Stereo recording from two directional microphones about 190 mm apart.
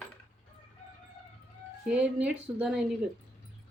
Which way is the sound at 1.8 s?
5° right (ahead or behind).